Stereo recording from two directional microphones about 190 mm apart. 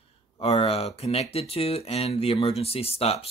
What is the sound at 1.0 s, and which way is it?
Speech, 30° left (ahead or behind).